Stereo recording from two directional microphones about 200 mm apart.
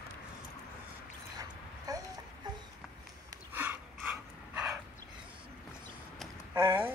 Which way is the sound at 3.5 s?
10° right (ahead or behind).